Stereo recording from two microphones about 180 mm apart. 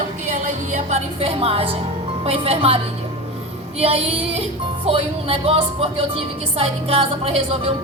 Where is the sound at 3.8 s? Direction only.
35° right (ahead or behind).